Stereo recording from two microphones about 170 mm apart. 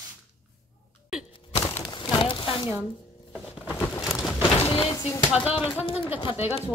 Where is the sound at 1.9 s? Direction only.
25° left (ahead or behind).